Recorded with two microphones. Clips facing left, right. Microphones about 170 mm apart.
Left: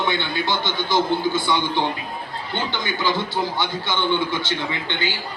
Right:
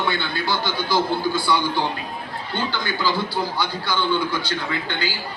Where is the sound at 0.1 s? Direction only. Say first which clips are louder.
Left 1 dB; 20° left (ahead or behind).